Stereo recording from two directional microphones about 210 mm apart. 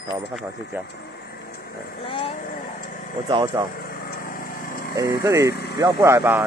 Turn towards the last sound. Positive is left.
turn(degrees=-10)  # may be behind; listen again after turning